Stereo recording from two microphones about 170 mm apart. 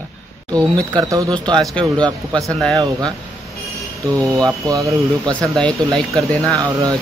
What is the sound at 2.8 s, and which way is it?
Speech, 25° right (ahead or behind).